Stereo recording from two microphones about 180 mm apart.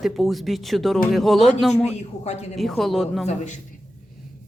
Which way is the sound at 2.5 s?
Centre (ahead or behind).